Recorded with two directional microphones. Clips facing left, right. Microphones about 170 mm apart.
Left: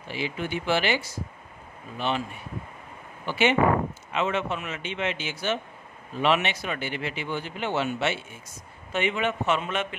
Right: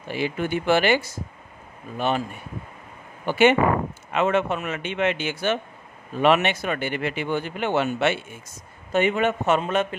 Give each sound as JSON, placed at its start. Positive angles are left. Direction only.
{"t": 0.1, "sound": "a man's voice", "side_deg": -50}
{"t": 3.3, "sound": "a man's voice", "side_deg": -50}
{"t": 8.9, "sound": "a man's voice", "side_deg": -45}